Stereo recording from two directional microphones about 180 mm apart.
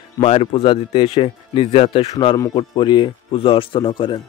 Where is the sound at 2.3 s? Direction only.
20° left (ahead or behind).